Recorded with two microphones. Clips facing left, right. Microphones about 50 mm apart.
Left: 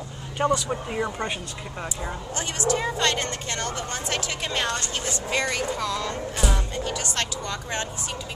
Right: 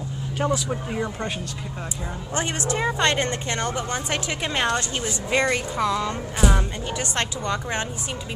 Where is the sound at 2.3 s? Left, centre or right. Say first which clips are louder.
Right 1 dB; right.